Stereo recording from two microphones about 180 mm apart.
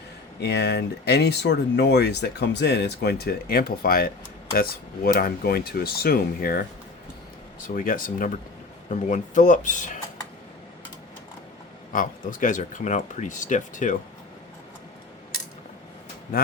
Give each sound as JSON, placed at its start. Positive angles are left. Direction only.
{"t": 0.3, "sound": "speech", "side_deg": 70}
{"t": 7.7, "sound": "speech", "side_deg": 50}
{"t": 11.9, "sound": "speech", "side_deg": 50}